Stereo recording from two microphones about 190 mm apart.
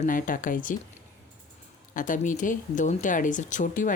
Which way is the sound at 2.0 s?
40° left (ahead or behind).